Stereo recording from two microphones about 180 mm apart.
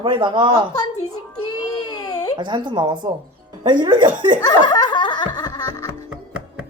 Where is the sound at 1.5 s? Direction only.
20° left (ahead or behind).